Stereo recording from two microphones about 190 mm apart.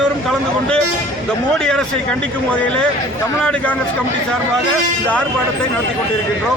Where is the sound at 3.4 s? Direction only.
5° left (ahead or behind).